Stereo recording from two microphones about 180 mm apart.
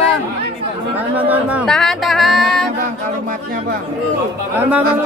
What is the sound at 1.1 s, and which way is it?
Speech, 10° right (ahead or behind).